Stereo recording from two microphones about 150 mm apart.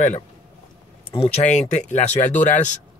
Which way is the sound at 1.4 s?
50° left (ahead or behind).